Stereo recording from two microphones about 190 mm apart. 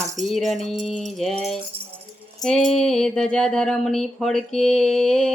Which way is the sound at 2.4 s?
5° left (ahead or behind).